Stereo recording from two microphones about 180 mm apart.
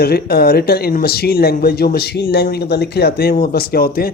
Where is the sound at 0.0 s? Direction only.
60° left (ahead or behind).